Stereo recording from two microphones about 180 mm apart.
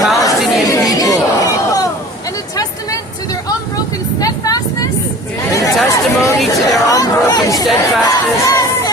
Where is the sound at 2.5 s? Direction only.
20° left (ahead or behind).